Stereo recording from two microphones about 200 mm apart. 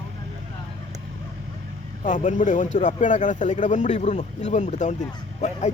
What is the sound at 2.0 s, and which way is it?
Speech, 40° left (ahead or behind).